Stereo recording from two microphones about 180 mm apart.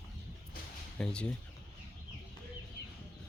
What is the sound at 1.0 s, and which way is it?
Speech, 5° left (ahead or behind).